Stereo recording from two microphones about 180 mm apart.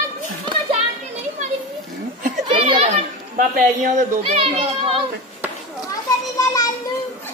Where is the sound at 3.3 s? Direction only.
45° right (ahead or behind).